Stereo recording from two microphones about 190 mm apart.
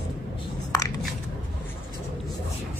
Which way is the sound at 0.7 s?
20° left (ahead or behind).